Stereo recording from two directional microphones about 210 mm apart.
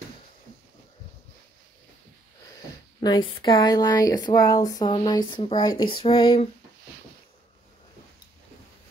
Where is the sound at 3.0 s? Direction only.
20° left (ahead or behind).